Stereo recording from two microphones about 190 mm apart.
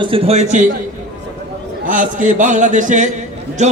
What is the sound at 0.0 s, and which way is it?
Speech, 30° right (ahead or behind).